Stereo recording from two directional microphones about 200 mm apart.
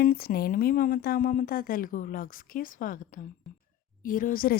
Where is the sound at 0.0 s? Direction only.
50° left (ahead or behind).